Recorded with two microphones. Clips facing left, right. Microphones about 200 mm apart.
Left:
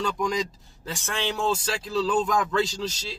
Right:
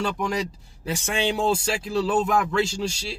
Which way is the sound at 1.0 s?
10° right (ahead or behind).